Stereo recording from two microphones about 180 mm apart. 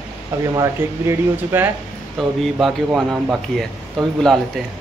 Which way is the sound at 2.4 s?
Centre (ahead or behind).